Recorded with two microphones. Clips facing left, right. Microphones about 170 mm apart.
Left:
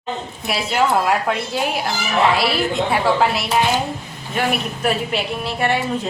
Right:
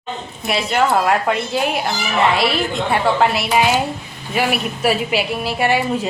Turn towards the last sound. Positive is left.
turn(degrees=-5)  # may be behind; listen again after turning